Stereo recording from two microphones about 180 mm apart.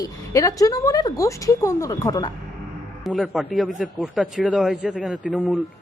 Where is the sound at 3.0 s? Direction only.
Centre (ahead or behind).